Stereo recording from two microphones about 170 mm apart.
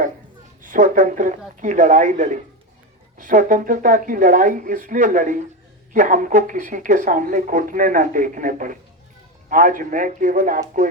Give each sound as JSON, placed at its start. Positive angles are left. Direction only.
{"t": 0.6, "sound": "speech", "side_deg": -50}